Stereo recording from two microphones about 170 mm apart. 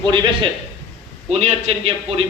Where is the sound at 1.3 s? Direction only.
40° right (ahead or behind).